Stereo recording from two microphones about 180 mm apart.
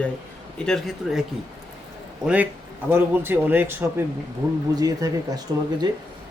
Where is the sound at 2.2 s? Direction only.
10° right (ahead or behind).